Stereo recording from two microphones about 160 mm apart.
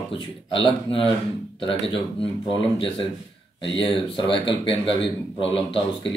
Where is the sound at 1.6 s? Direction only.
30° left (ahead or behind).